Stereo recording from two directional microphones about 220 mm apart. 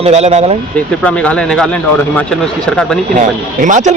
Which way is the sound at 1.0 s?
5° left (ahead or behind).